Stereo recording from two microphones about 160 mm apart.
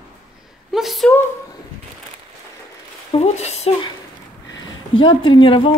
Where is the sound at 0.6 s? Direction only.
Centre (ahead or behind).